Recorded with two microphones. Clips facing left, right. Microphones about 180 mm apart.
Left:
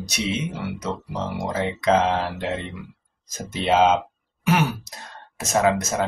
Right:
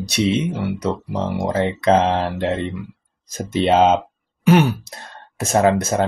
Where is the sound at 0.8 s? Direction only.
50° right (ahead or behind).